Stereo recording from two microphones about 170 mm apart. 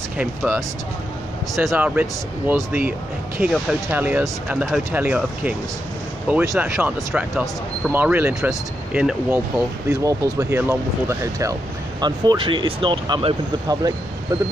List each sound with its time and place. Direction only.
0.2 s speech: 10° right (ahead or behind)
1.5 s speech: centre (ahead or behind)
2.0 s speech: 10° right (ahead or behind)
9.3 s speech: 15° right (ahead or behind)